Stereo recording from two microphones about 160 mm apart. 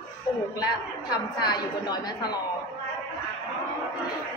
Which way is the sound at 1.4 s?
25° left (ahead or behind).